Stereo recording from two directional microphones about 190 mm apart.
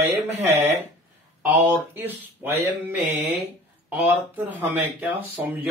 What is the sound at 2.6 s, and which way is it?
Speech, 10° right (ahead or behind).